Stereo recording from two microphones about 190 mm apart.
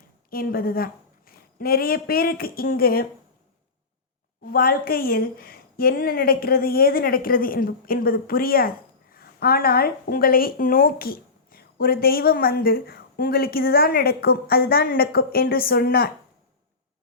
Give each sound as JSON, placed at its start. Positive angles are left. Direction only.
{"t": 0.3, "sound": "speech", "side_deg": 50}
{"t": 4.4, "sound": "speech", "side_deg": 50}